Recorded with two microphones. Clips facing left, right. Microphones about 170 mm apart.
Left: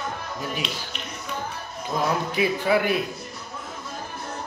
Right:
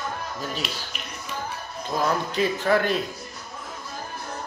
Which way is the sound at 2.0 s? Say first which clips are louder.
Even; 10° left (ahead or behind).